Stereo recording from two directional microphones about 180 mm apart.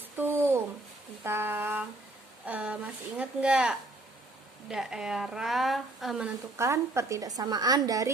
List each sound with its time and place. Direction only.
0.2 s a sound: 10° right (ahead or behind)
2.5 s a woman's voice: 5° right (ahead or behind)
6.6 s a woman's voice: 15° right (ahead or behind)